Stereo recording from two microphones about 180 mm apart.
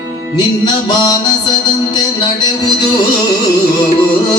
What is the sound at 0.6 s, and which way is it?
Music, 25° left (ahead or behind).